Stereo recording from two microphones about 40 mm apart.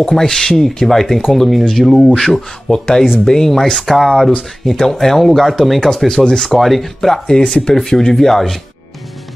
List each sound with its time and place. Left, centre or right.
0.0 s speech: centre